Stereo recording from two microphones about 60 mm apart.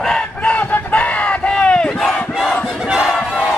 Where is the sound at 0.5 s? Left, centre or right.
Left.